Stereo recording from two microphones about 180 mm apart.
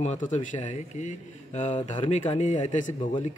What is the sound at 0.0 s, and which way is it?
Speech, 40° left (ahead or behind).